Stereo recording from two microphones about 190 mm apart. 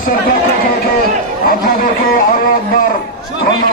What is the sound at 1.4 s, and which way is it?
Speech, 50° left (ahead or behind).